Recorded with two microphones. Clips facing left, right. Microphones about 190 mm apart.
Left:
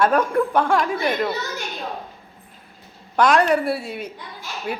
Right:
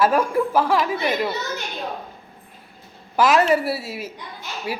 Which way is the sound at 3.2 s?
5° right (ahead or behind).